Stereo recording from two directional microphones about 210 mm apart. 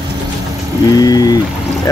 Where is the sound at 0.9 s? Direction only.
20° left (ahead or behind).